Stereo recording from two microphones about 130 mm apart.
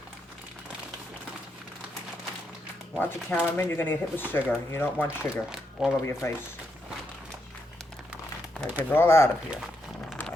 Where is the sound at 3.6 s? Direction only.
15° left (ahead or behind).